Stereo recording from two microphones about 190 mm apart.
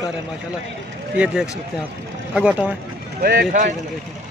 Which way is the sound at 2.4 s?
5° right (ahead or behind).